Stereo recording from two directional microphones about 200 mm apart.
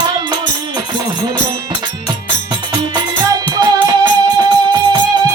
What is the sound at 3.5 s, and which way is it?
Music, 20° right (ahead or behind).